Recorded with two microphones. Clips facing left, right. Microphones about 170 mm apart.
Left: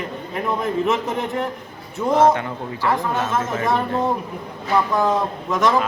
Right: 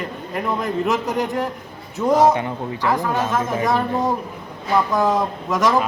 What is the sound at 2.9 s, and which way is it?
Speech, centre (ahead or behind).